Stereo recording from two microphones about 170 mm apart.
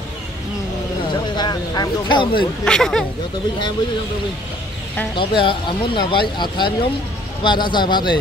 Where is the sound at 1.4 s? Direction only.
25° left (ahead or behind).